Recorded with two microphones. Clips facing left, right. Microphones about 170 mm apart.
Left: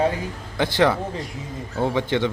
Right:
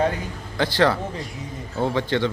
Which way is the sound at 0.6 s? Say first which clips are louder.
Even; 20° left (ahead or behind).